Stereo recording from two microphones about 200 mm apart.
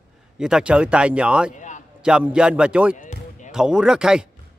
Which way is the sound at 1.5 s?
40° left (ahead or behind).